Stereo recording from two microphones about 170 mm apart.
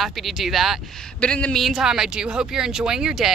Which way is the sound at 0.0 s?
Centre (ahead or behind).